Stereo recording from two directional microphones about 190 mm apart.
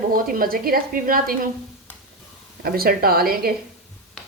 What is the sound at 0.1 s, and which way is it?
Speech, 50° right (ahead or behind).